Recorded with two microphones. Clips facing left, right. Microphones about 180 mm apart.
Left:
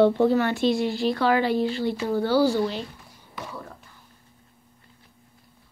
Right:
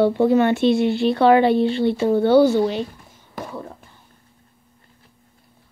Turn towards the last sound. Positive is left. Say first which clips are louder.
# right 6 dB
turn(degrees=-25)  # may be behind; listen again after turning